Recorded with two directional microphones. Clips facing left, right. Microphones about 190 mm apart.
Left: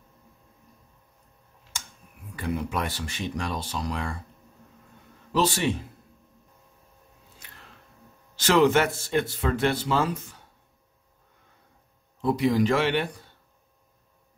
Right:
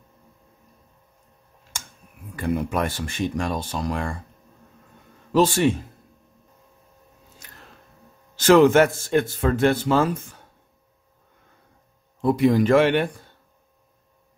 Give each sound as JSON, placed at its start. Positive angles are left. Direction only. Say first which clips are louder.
{"t": 1.7, "sound": "a sound", "louder": "right 2 dB", "side_deg": -50}
{"t": 2.3, "sound": "a man's voice", "louder": "right 5 dB", "side_deg": -50}
{"t": 5.3, "sound": "a man's voice", "louder": "right 6 dB", "side_deg": -50}
{"t": 7.4, "sound": "a sound", "louder": "right 2 dB", "side_deg": -45}
{"t": 8.4, "sound": "a man's voice", "louder": "right 6 dB", "side_deg": -50}
{"t": 12.2, "sound": "a man's voice", "louder": "right 4 dB", "side_deg": -50}